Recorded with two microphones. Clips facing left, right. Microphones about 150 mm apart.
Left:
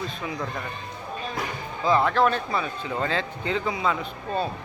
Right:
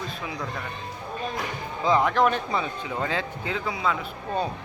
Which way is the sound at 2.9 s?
10° right (ahead or behind).